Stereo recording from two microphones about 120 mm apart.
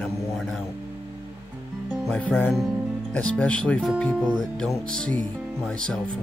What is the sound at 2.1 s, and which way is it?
Speech, 10° left (ahead or behind).